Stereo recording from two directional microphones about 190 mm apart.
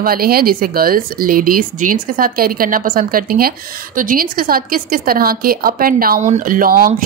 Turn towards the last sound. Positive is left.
turn(degrees=-50)  # may be behind; listen again after turning